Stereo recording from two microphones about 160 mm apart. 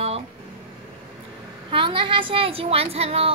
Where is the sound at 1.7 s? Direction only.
30° right (ahead or behind).